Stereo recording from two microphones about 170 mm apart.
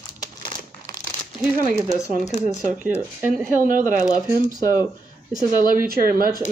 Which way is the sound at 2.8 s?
10° right (ahead or behind).